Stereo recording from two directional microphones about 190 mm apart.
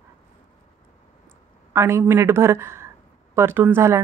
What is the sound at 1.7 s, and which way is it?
Speech, 15° right (ahead or behind).